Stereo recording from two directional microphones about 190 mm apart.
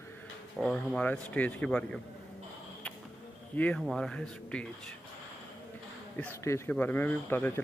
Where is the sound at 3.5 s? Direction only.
10° left (ahead or behind).